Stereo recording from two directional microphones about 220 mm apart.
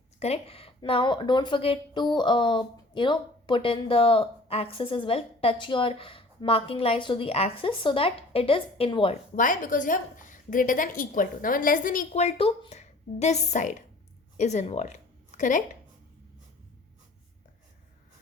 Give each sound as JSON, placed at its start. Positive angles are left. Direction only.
{"t": 0.2, "sound": "speech", "side_deg": 25}
{"t": 9.3, "sound": "a woman's voice", "side_deg": 35}